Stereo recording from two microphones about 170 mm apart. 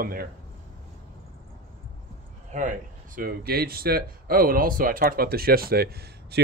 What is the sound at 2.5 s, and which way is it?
Speech, 50° right (ahead or behind).